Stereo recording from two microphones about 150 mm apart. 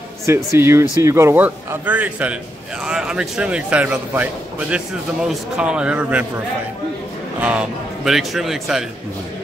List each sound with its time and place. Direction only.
0.3 s a man's voice: 15° right (ahead or behind)
7.3 s a man's voice: 10° right (ahead or behind)